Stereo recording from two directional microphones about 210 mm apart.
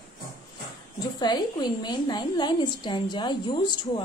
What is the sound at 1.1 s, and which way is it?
A woman's voice, 20° left (ahead or behind).